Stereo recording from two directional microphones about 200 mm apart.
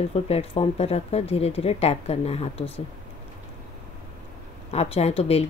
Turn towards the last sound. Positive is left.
turn(degrees=30)  # may be behind; listen again after turning